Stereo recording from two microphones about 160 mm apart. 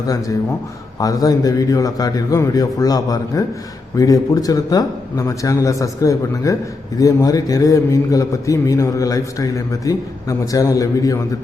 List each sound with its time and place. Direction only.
0.9 s a man's voice: 25° left (ahead or behind)